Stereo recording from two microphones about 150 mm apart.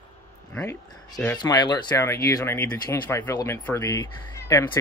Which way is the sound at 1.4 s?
30° left (ahead or behind).